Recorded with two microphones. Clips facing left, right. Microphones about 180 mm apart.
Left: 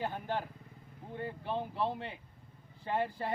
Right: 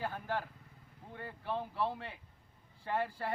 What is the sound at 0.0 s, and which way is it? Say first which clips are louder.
A man's voice: left 2 dB; 20° left (ahead or behind).